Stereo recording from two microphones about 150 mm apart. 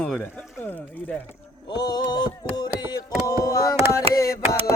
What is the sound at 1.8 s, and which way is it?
Music, 25° left (ahead or behind).